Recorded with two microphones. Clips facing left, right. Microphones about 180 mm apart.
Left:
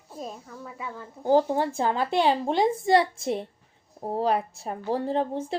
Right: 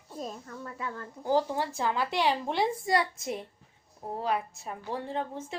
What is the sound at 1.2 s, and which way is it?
A woman's voice, 25° left (ahead or behind).